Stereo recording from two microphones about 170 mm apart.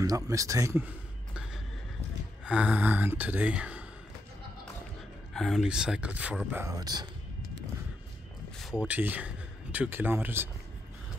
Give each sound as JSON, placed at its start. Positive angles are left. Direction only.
{"t": 0.0, "sound": "speech", "side_deg": -20}
{"t": 2.4, "sound": "speech", "side_deg": -5}
{"t": 5.3, "sound": "speech", "side_deg": 0}
{"t": 8.5, "sound": "speech", "side_deg": -5}